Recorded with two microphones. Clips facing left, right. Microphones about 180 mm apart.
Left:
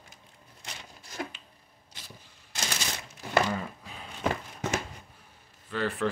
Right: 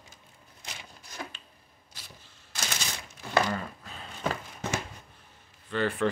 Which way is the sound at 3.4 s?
10° left (ahead or behind).